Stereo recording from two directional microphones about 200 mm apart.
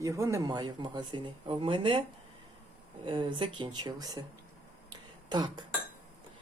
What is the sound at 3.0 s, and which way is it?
Speech, 25° right (ahead or behind).